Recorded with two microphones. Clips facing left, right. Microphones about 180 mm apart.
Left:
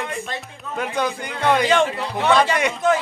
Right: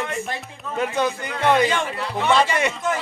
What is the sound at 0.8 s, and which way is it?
Speech, 5° right (ahead or behind).